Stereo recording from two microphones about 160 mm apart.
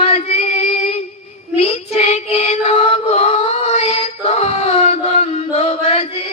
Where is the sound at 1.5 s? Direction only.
40° left (ahead or behind).